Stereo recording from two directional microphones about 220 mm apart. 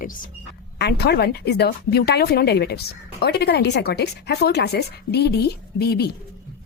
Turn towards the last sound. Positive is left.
turn(degrees=45)  # may be behind; listen again after turning